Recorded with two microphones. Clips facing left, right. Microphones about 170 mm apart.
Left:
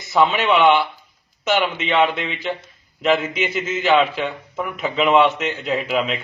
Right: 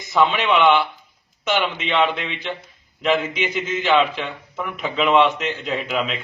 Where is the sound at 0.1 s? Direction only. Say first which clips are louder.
Left 1 dB; 5° left (ahead or behind).